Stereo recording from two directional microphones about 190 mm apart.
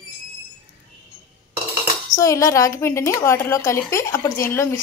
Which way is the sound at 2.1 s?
15° left (ahead or behind).